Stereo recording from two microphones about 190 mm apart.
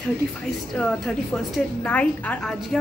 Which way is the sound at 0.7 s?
5° left (ahead or behind).